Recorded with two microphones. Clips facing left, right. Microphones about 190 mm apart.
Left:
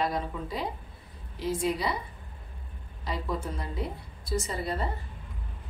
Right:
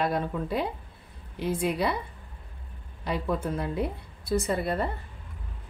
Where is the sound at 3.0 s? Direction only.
60° right (ahead or behind).